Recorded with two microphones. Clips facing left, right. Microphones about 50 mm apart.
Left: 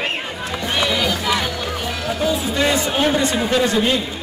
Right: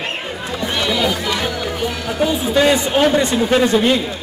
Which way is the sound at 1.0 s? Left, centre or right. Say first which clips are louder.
Right 2 dB; centre.